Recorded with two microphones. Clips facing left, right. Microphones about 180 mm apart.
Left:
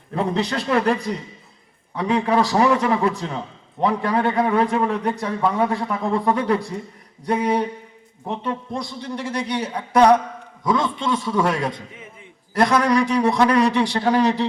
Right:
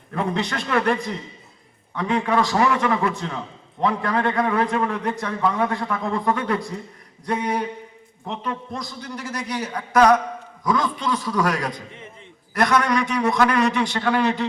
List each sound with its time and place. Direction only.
0.1 s a man's voice: 30° left (ahead or behind)
2.0 s a man's voice: 30° left (ahead or behind)